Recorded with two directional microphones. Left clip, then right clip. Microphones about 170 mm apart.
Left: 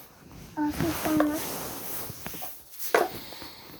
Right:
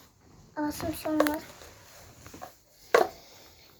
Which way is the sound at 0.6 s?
40° right (ahead or behind).